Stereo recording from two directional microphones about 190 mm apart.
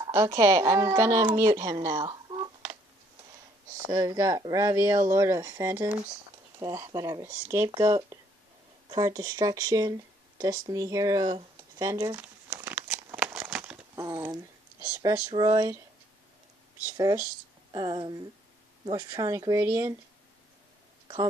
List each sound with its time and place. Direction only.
0.0 s a woman's voice: 15° right (ahead or behind)
3.9 s speech: 15° right (ahead or behind)
11.8 s crumpling: 15° right (ahead or behind)
13.9 s a sound: 15° right (ahead or behind)
14.9 s speech: 15° right (ahead or behind)
16.8 s speech: 15° right (ahead or behind)